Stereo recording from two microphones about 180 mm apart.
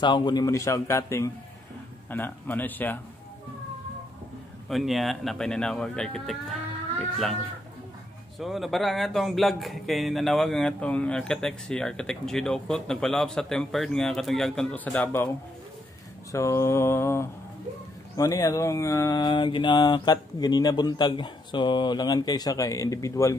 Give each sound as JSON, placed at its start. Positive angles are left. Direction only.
{"t": 0.0, "sound": "a man's voice", "side_deg": 25}
{"t": 4.6, "sound": "speech", "side_deg": 0}
{"t": 8.4, "sound": "speech", "side_deg": 0}
{"t": 16.3, "sound": "a man's voice", "side_deg": 15}
{"t": 18.1, "sound": "a sound", "side_deg": 20}